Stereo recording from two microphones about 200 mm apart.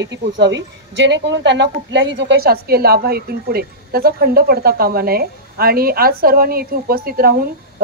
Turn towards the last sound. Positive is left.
turn(degrees=-45)  # may be behind; listen again after turning